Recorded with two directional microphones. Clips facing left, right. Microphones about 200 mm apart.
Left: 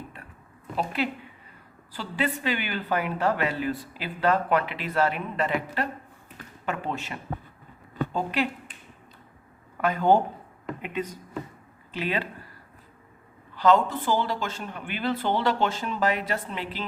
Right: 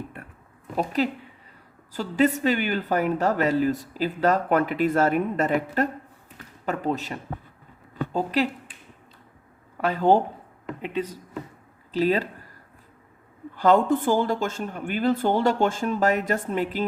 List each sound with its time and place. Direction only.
0.8 s a man's voice: 40° right (ahead or behind)
9.8 s a man's voice: 35° right (ahead or behind)
13.6 s a woman's voice: 50° right (ahead or behind)